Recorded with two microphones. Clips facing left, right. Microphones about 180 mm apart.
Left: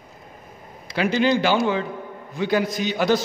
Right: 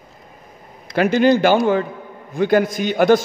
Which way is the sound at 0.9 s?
50° right (ahead or behind).